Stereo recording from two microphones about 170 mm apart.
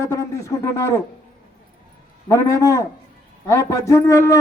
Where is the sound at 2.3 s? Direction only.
20° left (ahead or behind).